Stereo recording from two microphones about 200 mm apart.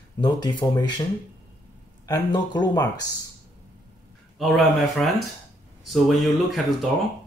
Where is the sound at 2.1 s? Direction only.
20° left (ahead or behind).